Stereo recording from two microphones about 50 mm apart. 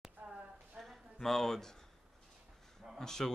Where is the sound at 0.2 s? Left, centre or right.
Right.